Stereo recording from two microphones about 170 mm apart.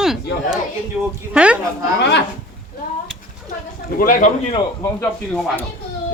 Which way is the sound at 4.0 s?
55° left (ahead or behind).